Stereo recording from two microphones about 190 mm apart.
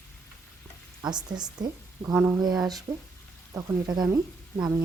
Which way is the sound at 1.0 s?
20° right (ahead or behind).